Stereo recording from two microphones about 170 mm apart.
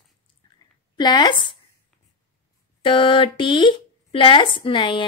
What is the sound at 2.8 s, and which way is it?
Speech, 30° left (ahead or behind).